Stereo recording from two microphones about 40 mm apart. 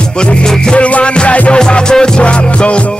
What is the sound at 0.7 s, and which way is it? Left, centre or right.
Music, left.